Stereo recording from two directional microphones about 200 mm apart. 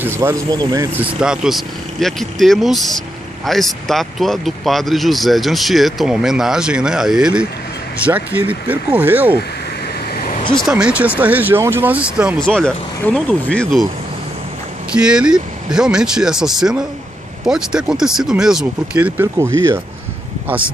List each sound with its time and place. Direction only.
0.0 s speech: 10° right (ahead or behind)
0.9 s speech: 5° right (ahead or behind)
10.1 s vehicle: 45° left (ahead or behind)
10.5 s speech: centre (ahead or behind)
12.4 s speech: 5° left (ahead or behind)
14.9 s speech: 5° right (ahead or behind)
20.4 s speech: 5° right (ahead or behind)